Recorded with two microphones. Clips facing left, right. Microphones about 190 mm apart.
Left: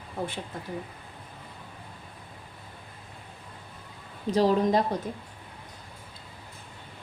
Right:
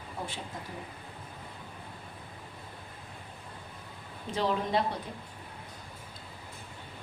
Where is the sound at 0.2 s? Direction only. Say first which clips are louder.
Left 6 dB; 55° left (ahead or behind).